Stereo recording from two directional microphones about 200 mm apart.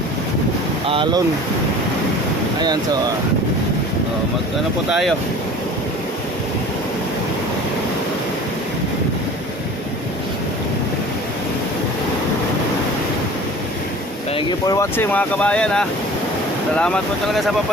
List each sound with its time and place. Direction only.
0.9 s speech: 25° right (ahead or behind)
4.9 s speech: centre (ahead or behind)
14.3 s speech: 15° left (ahead or behind)